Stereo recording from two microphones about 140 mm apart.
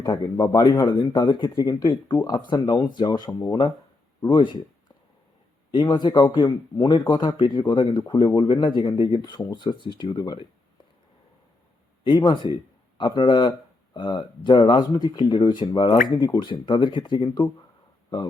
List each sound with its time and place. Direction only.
0.0 s speech: 25° left (ahead or behind)
5.7 s speech: 30° left (ahead or behind)
12.0 s speech: 35° left (ahead or behind)